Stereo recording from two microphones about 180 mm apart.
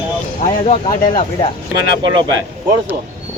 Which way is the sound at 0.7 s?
30° left (ahead or behind).